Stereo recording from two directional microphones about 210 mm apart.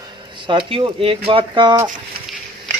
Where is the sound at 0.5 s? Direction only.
25° right (ahead or behind).